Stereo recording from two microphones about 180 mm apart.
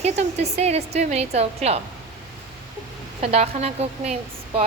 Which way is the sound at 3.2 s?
35° right (ahead or behind).